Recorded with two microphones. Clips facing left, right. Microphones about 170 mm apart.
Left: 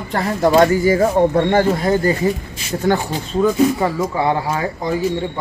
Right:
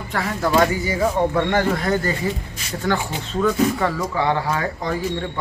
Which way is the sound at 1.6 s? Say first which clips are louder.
Left 5 dB; 25° left (ahead or behind).